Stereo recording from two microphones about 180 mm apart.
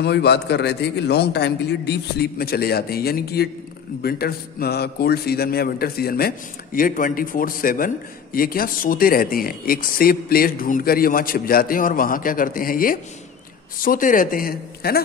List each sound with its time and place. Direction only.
0.0 s a man's voice: 70° left (ahead or behind)